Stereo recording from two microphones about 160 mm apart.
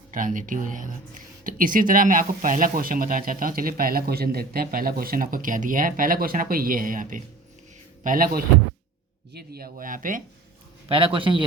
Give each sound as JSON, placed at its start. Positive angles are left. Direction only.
{"t": 0.1, "sound": "speech", "side_deg": -55}
{"t": 9.3, "sound": "speech", "side_deg": -80}
{"t": 10.8, "sound": "a man's voice", "side_deg": -35}